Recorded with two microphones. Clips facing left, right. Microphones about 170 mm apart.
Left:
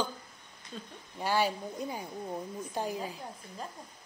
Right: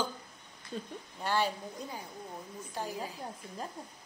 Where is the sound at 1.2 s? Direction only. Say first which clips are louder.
Left 2 dB; 10° left (ahead or behind).